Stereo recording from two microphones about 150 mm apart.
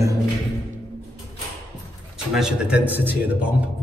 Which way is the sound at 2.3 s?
5° right (ahead or behind).